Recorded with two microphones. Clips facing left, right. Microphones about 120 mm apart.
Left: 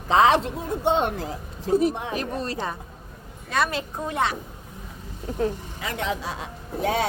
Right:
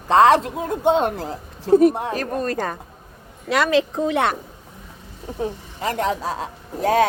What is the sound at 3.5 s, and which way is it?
Speech, 90° right.